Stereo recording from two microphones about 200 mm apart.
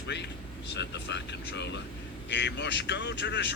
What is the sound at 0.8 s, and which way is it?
Speech, 60° left (ahead or behind).